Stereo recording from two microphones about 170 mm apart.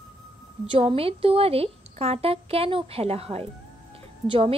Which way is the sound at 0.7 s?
35° right (ahead or behind).